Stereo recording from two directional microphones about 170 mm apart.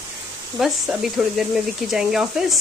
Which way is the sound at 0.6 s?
Centre (ahead or behind).